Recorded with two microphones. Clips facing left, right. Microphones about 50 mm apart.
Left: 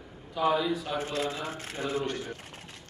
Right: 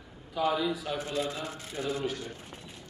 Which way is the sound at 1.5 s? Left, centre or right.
Left.